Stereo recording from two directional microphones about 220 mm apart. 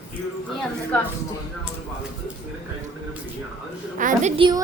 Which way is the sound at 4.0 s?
35° right (ahead or behind).